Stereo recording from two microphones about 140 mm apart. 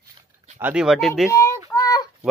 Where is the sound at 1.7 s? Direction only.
25° left (ahead or behind).